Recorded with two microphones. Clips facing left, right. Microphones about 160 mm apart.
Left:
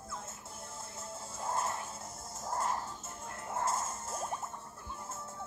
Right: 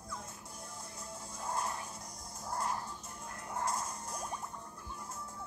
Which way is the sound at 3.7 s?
5° left (ahead or behind).